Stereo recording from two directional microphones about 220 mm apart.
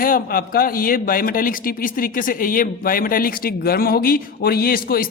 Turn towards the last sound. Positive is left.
turn(degrees=40)  # may be behind; listen again after turning